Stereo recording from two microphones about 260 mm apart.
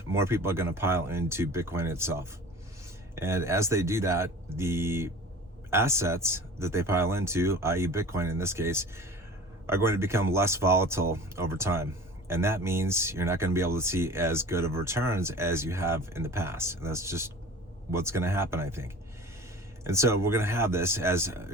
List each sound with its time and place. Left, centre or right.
0.1 s speech: centre